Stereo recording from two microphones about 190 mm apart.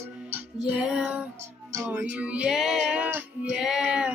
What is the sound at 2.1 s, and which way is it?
Female singing, 5° right (ahead or behind).